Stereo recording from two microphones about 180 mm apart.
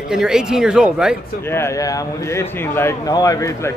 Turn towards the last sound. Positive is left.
turn(degrees=15)  # may be behind; listen again after turning